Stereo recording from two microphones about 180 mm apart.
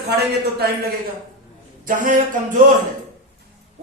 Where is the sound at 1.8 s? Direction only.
50° right (ahead or behind).